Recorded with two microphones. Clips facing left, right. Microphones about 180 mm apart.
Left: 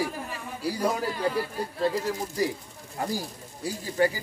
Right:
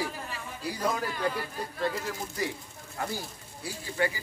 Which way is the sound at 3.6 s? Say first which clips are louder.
Left 5 dB; 40° left (ahead or behind).